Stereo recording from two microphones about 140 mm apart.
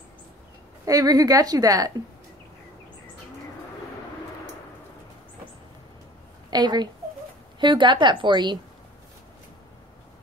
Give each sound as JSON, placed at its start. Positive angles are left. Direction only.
{"t": 0.8, "sound": "a woman's voice", "side_deg": -25}
{"t": 6.5, "sound": "a woman's voice", "side_deg": -30}